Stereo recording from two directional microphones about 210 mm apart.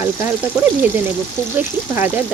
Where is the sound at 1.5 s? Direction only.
10° right (ahead or behind).